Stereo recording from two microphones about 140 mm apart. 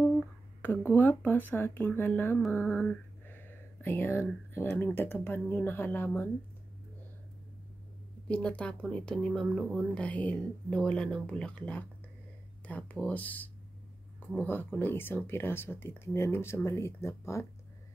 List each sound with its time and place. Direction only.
0.6 s speech: 15° left (ahead or behind)
2.5 s a sound: 10° left (ahead or behind)
4.6 s speech: 10° left (ahead or behind)
8.3 s speech: 10° left (ahead or behind)